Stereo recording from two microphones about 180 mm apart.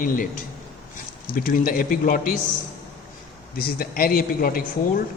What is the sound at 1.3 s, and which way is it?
A man's voice, 50° left (ahead or behind).